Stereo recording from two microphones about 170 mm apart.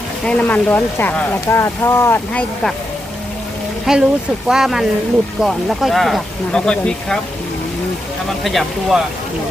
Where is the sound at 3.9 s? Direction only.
Centre (ahead or behind).